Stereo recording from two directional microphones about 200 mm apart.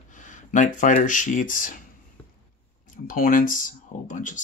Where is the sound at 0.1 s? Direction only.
40° left (ahead or behind).